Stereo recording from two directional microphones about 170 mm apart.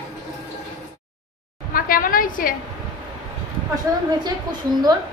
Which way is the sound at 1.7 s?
55° left (ahead or behind).